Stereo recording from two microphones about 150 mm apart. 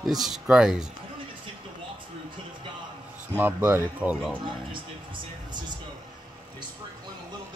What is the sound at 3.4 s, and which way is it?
Speech, 15° right (ahead or behind).